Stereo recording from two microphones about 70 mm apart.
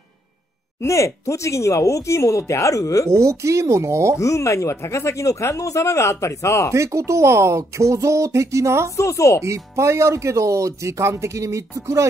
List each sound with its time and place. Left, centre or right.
0.7 s speech: left
3.1 s speech: right
4.2 s speech: left
6.7 s speech: right
8.9 s speech: left
9.4 s speech: right